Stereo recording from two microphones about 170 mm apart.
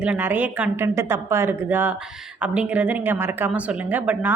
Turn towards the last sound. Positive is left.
turn(degrees=-10)  # may be behind; listen again after turning